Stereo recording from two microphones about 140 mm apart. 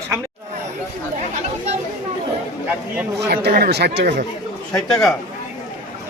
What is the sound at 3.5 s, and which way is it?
Speech, 80° right.